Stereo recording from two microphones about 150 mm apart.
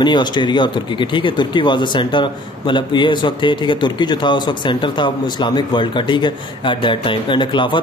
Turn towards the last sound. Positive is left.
turn(degrees=30)  # may be behind; listen again after turning